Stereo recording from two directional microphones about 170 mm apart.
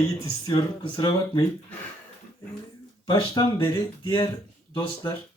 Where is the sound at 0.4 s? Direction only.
25° left (ahead or behind).